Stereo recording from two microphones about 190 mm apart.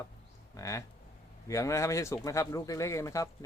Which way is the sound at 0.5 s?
15° left (ahead or behind).